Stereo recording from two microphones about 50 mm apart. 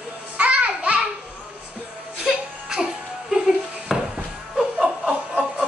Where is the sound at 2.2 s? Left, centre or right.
Centre.